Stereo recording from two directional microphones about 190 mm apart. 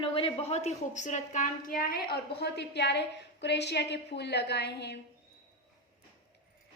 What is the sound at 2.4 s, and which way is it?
A woman's voice, 65° left (ahead or behind).